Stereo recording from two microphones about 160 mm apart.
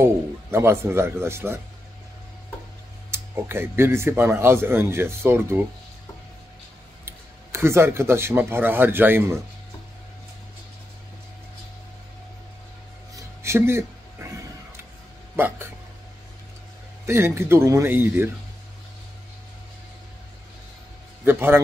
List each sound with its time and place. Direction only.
0.0 s speech: 15° right (ahead or behind)
3.1 s speech: 15° right (ahead or behind)
7.1 s speech: 15° right (ahead or behind)
13.1 s a sound: 15° right (ahead or behind)
15.3 s speech: 15° right (ahead or behind)
17.0 s speech: 15° right (ahead or behind)
21.2 s a man's voice: 15° right (ahead or behind)